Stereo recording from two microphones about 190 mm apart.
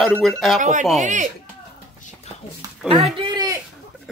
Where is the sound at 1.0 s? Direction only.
40° right (ahead or behind).